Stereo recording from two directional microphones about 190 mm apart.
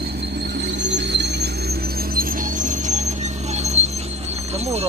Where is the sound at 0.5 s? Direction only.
65° right (ahead or behind); by 3.9 s 35° right (ahead or behind).